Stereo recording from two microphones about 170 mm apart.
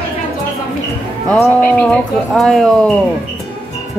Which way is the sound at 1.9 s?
5° left (ahead or behind).